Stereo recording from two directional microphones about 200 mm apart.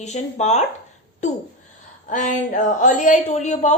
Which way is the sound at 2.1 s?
40° left (ahead or behind).